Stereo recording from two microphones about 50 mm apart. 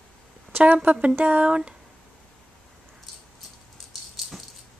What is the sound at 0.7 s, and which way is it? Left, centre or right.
Speech, right.